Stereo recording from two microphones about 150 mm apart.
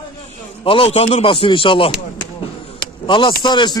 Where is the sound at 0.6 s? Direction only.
40° left (ahead or behind).